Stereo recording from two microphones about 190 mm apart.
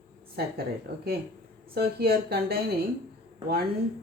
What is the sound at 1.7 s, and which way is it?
Speech, 55° right (ahead or behind).